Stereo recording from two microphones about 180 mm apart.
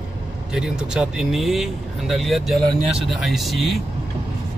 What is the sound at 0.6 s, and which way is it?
Speech, 5° right (ahead or behind).